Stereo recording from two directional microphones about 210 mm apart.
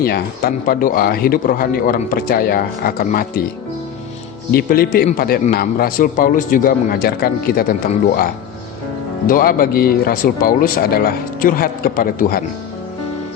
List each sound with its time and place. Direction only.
0.0 s speech: 45° left (ahead or behind)
4.5 s speech: 45° left (ahead or behind)